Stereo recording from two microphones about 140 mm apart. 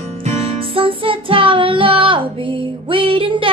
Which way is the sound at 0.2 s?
50° right (ahead or behind).